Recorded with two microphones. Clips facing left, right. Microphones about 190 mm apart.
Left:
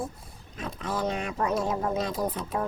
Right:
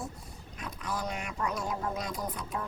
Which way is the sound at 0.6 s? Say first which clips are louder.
Left 6 dB; 25° left (ahead or behind).